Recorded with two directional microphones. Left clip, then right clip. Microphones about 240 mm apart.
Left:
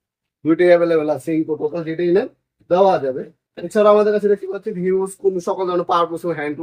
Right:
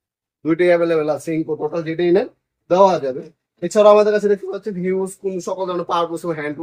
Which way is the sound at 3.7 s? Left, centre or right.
Right.